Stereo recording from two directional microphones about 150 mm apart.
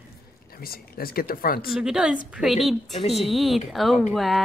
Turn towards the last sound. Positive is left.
turn(degrees=0)  # may be behind; listen again after turning